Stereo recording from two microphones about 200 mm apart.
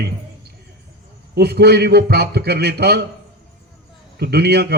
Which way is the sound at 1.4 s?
55° right (ahead or behind).